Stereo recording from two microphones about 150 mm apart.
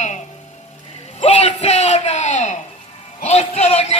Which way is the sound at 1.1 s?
50° left (ahead or behind).